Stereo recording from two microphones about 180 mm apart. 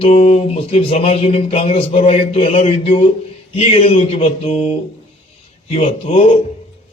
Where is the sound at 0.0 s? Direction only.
35° left (ahead or behind).